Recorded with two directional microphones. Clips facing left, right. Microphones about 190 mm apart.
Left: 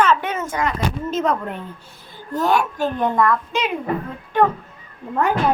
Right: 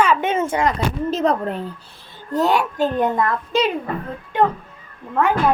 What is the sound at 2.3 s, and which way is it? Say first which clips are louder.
A woman's voice: right 1 dB; 20° right (ahead or behind).